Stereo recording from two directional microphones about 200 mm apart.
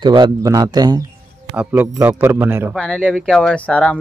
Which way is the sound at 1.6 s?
10° right (ahead or behind).